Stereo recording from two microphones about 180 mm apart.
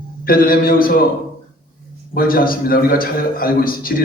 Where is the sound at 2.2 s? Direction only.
55° left (ahead or behind).